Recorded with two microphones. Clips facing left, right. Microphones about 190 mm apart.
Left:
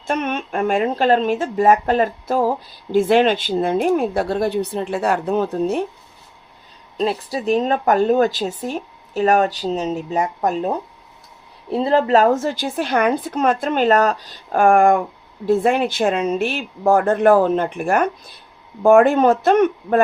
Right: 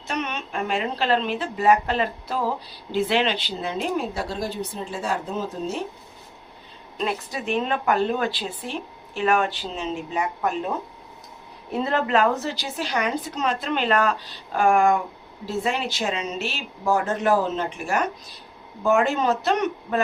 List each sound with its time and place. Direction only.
0.1 s a woman's voice: 50° left (ahead or behind)
6.9 s a woman's voice: 35° left (ahead or behind); by 20.0 s 50° left (ahead or behind)